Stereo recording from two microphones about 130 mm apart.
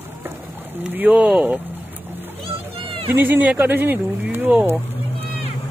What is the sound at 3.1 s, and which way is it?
Speech, 15° right (ahead or behind).